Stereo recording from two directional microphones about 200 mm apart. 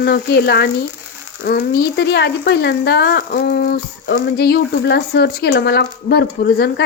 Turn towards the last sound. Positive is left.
turn(degrees=55)  # may be behind; listen again after turning